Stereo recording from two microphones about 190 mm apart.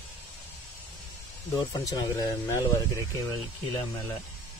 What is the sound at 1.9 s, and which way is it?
Speech, 15° left (ahead or behind).